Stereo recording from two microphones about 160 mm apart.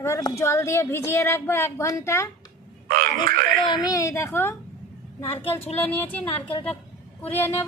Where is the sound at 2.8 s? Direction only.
60° right (ahead or behind).